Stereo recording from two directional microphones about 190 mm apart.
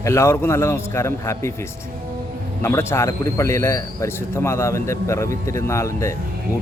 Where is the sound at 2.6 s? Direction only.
15° left (ahead or behind).